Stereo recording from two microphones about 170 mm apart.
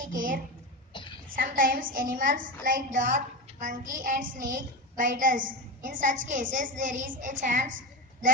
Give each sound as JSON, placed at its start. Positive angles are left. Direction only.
{"t": 0.0, "sound": "a woman's voice", "side_deg": -50}
{"t": 0.9, "sound": "a sound", "side_deg": 30}
{"t": 1.4, "sound": "a woman's voice", "side_deg": -55}